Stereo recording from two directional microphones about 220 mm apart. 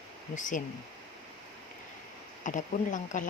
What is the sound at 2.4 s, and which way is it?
Speech, 35° left (ahead or behind).